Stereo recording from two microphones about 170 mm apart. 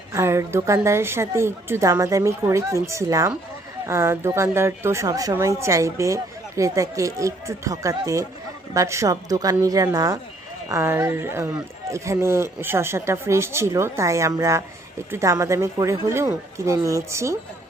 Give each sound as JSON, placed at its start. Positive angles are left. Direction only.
{"t": 0.1, "sound": "speech", "side_deg": -15}